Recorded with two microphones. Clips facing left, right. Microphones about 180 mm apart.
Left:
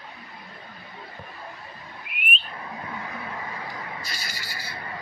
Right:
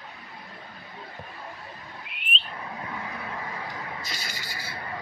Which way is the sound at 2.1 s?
25° right (ahead or behind).